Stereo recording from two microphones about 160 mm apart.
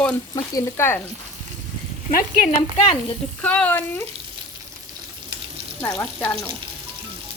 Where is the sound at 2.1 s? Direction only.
65° left (ahead or behind).